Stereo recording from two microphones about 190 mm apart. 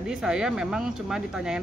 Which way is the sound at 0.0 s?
5° right (ahead or behind).